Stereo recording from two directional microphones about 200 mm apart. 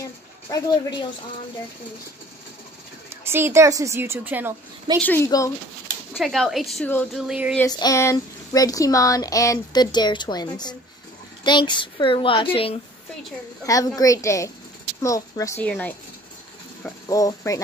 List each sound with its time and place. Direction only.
0.5 s speech: 20° left (ahead or behind)
3.1 s speech: 10° right (ahead or behind)
5.0 s speech: 10° left (ahead or behind)
6.1 s a woman's voice: centre (ahead or behind)
7.5 s speech: 15° left (ahead or behind)
13.7 s speech: 15° left (ahead or behind)